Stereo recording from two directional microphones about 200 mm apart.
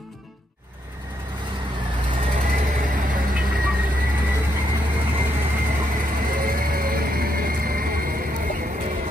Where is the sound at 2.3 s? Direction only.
40° right (ahead or behind).